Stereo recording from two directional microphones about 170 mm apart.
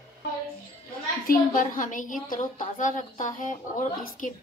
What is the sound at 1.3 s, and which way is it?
A woman's voice, 50° left (ahead or behind).